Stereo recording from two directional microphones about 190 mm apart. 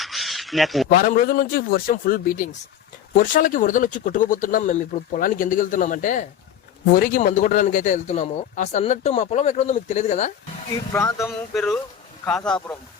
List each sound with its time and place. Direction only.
0.0 s a sound: centre (ahead or behind)
0.9 s a man's voice: 50° left (ahead or behind)
10.9 s speech: 15° left (ahead or behind)
11.5 s speech: centre (ahead or behind)